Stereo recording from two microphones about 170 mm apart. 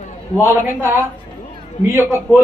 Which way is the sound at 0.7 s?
15° right (ahead or behind).